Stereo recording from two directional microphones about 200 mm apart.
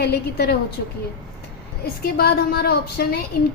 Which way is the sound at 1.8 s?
50° left (ahead or behind).